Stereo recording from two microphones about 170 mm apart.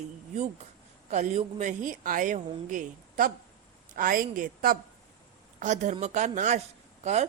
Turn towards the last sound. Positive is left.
turn(degrees=-40)  # may be behind; listen again after turning